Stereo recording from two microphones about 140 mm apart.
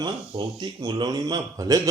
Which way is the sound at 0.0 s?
30° right (ahead or behind).